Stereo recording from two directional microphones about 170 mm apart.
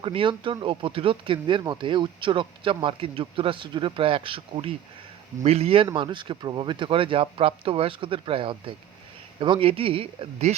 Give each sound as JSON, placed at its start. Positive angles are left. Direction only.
{"t": 0.0, "sound": "speech", "side_deg": -30}